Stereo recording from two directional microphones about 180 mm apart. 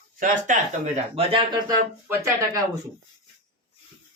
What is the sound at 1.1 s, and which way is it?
Speech, 25° right (ahead or behind).